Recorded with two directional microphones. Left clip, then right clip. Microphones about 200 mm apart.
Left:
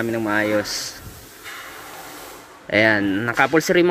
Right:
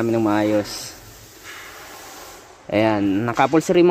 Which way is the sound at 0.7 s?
10° left (ahead or behind).